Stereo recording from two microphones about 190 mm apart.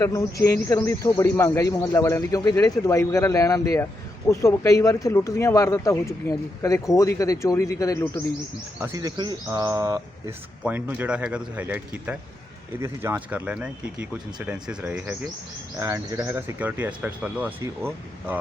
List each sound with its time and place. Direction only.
0.0 s speech: 20° left (ahead or behind)
8.8 s speech: 15° right (ahead or behind)